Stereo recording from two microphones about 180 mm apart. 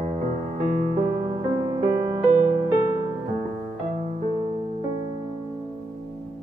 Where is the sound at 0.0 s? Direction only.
40° right (ahead or behind).